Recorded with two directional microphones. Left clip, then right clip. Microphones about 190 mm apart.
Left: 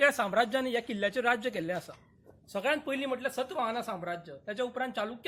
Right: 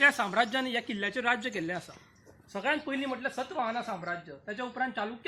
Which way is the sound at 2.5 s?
40° left (ahead or behind).